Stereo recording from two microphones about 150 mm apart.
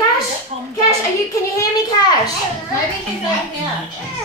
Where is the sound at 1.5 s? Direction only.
25° left (ahead or behind).